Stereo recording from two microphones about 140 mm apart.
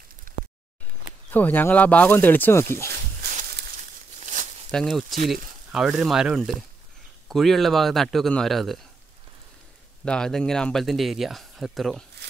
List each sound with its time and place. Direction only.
1.3 s speech: 15° left (ahead or behind)
4.2 s a sound: 65° right (ahead or behind)
4.6 s speech: 5° left (ahead or behind)
10.0 s speech: 5° left (ahead or behind)